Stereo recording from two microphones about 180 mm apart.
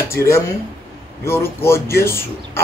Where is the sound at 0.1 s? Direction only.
15° left (ahead or behind).